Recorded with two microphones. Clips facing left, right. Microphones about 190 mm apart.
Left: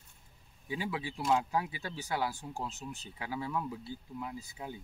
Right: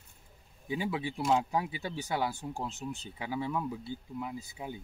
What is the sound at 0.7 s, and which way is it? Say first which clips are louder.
Speech: right 3 dB; 20° right (ahead or behind).